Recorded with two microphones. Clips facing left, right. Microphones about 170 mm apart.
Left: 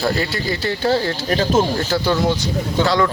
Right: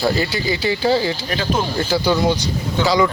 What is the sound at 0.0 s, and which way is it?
Speech, centre (ahead or behind).